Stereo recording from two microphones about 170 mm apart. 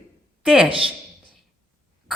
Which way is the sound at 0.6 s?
30° right (ahead or behind).